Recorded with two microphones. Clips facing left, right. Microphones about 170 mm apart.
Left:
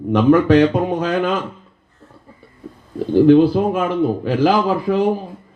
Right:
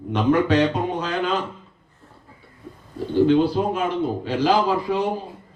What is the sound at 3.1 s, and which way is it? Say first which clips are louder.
Speech: left 6 dB; 50° left (ahead or behind).